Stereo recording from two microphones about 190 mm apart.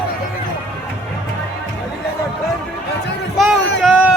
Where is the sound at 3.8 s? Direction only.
5° right (ahead or behind).